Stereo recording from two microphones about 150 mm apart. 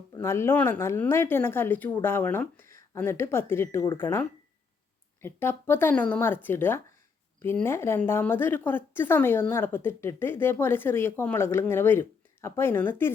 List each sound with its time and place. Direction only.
0.1 s a woman's voice: 15° left (ahead or behind)